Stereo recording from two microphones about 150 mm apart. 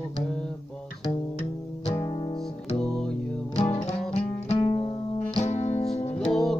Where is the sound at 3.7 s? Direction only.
45° left (ahead or behind).